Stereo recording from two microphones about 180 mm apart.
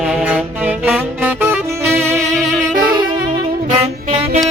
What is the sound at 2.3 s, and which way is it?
Saxophone, 5° left (ahead or behind).